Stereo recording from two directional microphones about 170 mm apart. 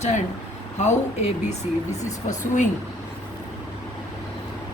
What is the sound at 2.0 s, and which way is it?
Speech, 45° left (ahead or behind).